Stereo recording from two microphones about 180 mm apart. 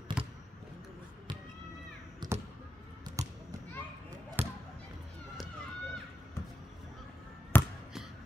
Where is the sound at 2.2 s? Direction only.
25° right (ahead or behind).